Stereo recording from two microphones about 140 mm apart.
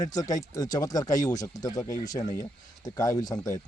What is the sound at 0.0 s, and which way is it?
Speech, 25° left (ahead or behind).